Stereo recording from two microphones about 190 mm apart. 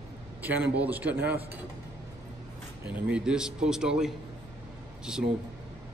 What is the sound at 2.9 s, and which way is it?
A man's voice, 5° right (ahead or behind).